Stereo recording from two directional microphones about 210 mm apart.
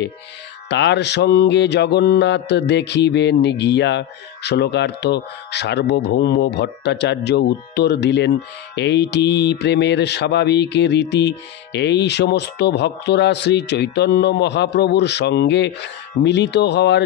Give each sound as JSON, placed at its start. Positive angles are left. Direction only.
{"t": 0.7, "sound": "mantra", "side_deg": 55}
{"t": 8.7, "sound": "speech", "side_deg": 55}